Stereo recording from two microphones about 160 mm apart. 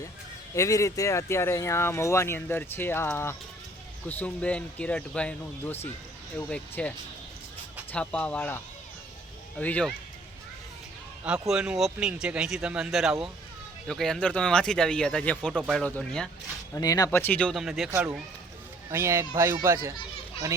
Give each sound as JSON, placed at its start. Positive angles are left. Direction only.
{"t": 0.5, "sound": "speech", "side_deg": 20}
{"t": 11.4, "sound": "speech", "side_deg": -5}
{"t": 16.7, "sound": "speech", "side_deg": 20}